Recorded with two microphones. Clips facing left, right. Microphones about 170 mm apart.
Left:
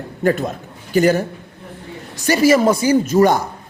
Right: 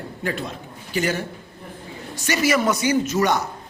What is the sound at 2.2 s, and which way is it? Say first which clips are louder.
A man's voice: left 7 dB; 35° left (ahead or behind).